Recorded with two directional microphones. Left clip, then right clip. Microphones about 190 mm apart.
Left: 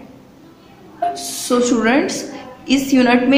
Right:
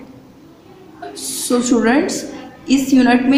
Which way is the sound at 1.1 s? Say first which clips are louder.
Right 5 dB; 15° right (ahead or behind).